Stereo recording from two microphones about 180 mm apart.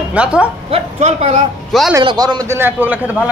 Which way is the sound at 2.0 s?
20° right (ahead or behind).